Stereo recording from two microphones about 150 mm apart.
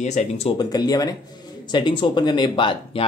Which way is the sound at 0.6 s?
25° left (ahead or behind).